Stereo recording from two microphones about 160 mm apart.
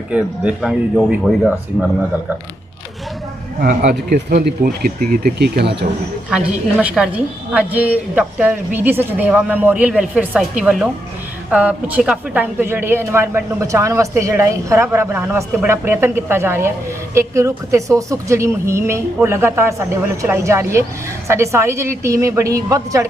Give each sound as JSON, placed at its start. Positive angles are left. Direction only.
{"t": 0.1, "sound": "speech", "side_deg": -5}
{"t": 3.6, "sound": "speech", "side_deg": -65}
{"t": 6.3, "sound": "speech", "side_deg": -5}